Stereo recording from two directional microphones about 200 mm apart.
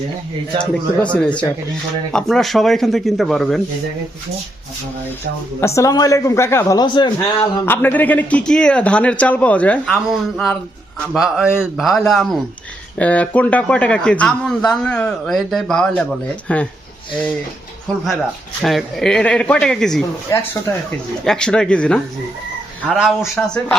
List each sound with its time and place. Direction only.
1.0 s a man's voice: 5° left (ahead or behind)
5.5 s a man's voice: 15° left (ahead or behind)
7.6 s a man's voice: 10° left (ahead or behind)
18.6 s a man's voice: centre (ahead or behind)